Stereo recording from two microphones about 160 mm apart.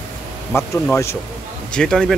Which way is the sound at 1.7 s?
5° left (ahead or behind).